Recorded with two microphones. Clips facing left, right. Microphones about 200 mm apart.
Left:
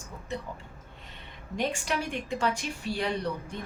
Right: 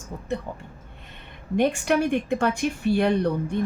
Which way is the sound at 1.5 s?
60° right (ahead or behind).